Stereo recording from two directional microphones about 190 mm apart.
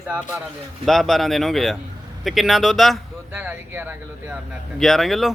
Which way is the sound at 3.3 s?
10° right (ahead or behind).